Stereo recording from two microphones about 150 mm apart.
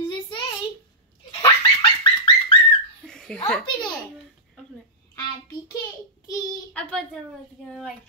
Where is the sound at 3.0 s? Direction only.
5° left (ahead or behind).